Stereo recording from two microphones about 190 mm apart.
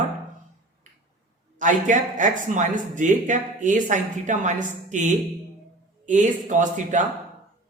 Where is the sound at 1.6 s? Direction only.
40° right (ahead or behind).